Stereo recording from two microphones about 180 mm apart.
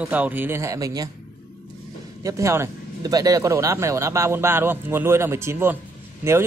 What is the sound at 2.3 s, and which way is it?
Speech, 15° right (ahead or behind).